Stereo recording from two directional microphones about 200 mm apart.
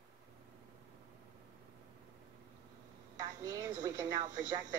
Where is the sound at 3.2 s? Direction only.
20° right (ahead or behind).